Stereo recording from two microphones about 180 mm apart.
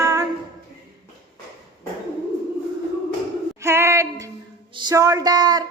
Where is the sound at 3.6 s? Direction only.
15° right (ahead or behind).